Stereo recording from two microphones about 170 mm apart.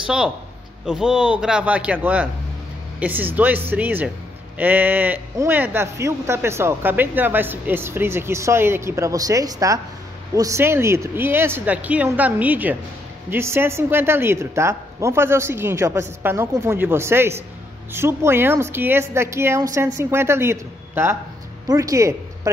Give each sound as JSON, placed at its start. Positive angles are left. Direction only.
{"t": 0.0, "sound": "a man's voice", "side_deg": -5}